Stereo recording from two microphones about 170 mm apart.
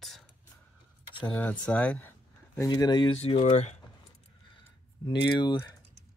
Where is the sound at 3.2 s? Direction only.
35° left (ahead or behind).